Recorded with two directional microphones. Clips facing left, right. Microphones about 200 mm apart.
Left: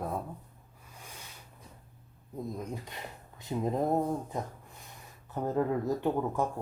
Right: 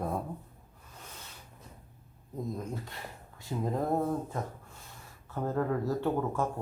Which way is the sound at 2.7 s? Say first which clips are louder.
Even; 20° left (ahead or behind).